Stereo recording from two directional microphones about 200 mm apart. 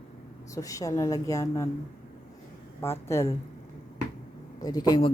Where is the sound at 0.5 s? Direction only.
15° left (ahead or behind).